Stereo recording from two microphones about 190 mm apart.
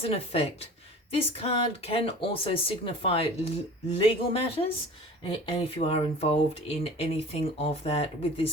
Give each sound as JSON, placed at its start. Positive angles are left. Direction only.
{"t": 0.0, "sound": "speech", "side_deg": 30}